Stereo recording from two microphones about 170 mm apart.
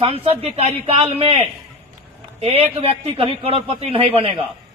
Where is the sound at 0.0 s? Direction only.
35° right (ahead or behind).